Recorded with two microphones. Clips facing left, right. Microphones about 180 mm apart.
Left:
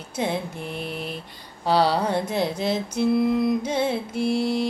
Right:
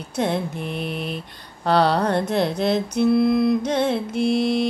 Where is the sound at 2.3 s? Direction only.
65° right (ahead or behind).